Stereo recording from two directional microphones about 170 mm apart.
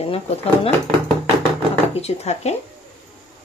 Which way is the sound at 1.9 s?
40° left (ahead or behind).